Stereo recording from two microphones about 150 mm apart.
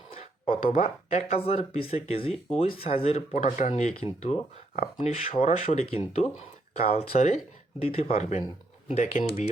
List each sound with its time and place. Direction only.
0.5 s speech: 55° left (ahead or behind)